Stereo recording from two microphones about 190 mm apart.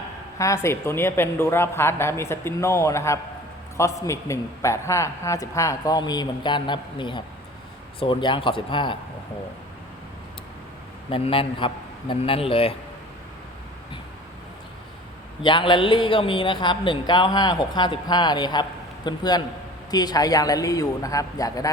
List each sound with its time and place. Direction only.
0.3 s a man's voice: 15° left (ahead or behind)
11.1 s speech: 25° left (ahead or behind)
15.4 s speech: 25° left (ahead or behind)